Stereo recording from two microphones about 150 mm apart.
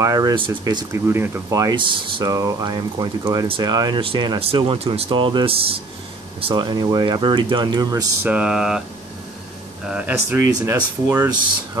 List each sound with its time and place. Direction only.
0.0 s speech: 25° right (ahead or behind)
8.3 s a sound: 5° right (ahead or behind)
9.8 s speech: 10° right (ahead or behind)